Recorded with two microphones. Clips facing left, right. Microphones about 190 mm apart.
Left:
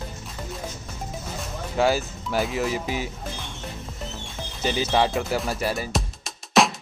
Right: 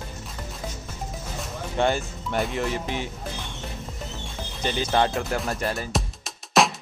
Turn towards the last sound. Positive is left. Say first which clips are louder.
# left 1 dB
turn(degrees=0)  # may be behind; listen again after turning